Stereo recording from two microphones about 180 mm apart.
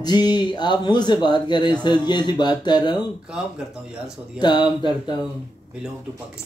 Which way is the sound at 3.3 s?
5° right (ahead or behind).